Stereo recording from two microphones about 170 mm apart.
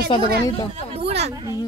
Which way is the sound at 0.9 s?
35° right (ahead or behind).